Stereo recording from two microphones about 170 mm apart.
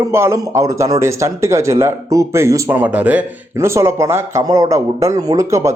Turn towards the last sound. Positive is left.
turn(degrees=-15)  # may be behind; listen again after turning